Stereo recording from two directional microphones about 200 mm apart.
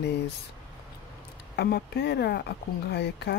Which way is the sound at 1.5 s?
55° left (ahead or behind).